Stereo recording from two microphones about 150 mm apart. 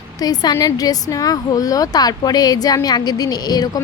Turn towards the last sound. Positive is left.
turn(degrees=25)  # may be behind; listen again after turning